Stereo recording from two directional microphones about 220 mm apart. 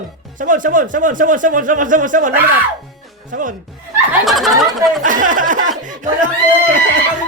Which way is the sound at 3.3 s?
35° right (ahead or behind).